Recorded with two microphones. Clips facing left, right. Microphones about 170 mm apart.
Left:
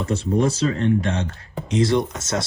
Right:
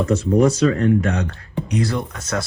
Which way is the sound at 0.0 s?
30° left (ahead or behind).